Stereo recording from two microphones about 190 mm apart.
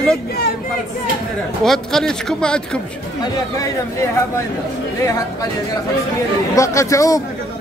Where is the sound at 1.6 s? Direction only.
Centre (ahead or behind).